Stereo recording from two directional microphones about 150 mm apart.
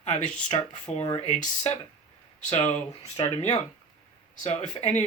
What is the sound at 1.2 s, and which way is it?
Speech, 55° left (ahead or behind).